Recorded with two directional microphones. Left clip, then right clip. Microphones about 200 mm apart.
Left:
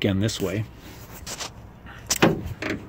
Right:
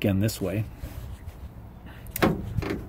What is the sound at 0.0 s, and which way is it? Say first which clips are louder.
Speech: left 3 dB; 5° right (ahead or behind).